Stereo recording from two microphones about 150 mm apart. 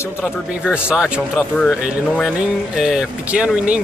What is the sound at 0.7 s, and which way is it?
Speech, 5° right (ahead or behind).